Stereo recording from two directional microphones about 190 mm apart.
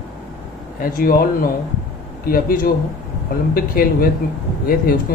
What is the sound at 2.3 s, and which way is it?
Speech, 50° left (ahead or behind).